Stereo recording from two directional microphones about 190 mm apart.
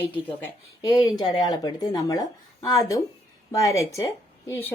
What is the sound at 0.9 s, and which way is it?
Speech, 25° left (ahead or behind).